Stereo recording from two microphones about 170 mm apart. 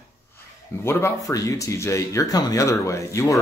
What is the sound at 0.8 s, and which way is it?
Speech, 20° left (ahead or behind).